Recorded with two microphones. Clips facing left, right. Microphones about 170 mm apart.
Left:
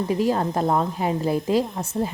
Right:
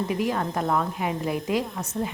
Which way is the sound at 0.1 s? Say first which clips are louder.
Left 4 dB; 30° left (ahead or behind).